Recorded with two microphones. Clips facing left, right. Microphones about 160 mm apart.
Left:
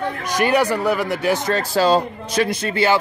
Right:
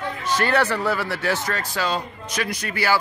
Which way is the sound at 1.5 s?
30° left (ahead or behind).